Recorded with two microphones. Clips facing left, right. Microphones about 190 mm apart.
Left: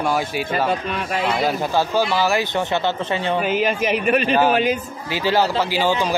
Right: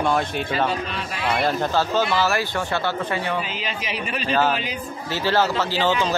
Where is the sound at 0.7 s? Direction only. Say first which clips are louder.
Left 5 dB; 55° left (ahead or behind).